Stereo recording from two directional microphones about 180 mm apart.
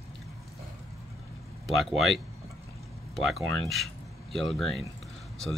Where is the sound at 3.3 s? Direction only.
Centre (ahead or behind).